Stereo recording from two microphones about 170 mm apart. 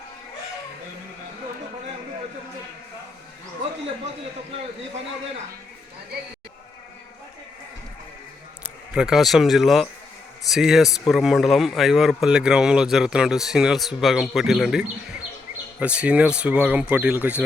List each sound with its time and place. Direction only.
8.6 s speech: 5° right (ahead or behind)